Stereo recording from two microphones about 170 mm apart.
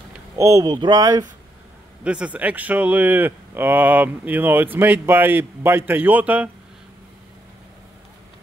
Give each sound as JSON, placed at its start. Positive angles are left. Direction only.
{"t": 0.4, "sound": "speech", "side_deg": -20}
{"t": 2.0, "sound": "speech", "side_deg": -5}